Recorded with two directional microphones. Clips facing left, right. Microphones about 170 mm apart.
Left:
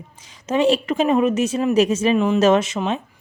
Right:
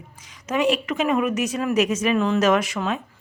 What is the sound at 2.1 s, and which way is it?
Speech, 15° left (ahead or behind).